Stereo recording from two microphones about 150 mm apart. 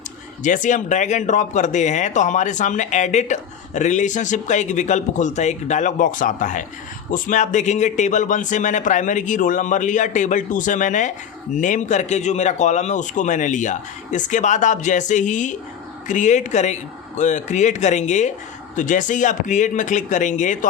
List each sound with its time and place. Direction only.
0.4 s a man's voice: 55° left (ahead or behind)